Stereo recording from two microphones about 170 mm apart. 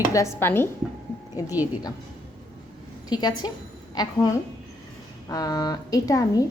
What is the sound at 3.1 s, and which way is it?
Speech, 25° left (ahead or behind).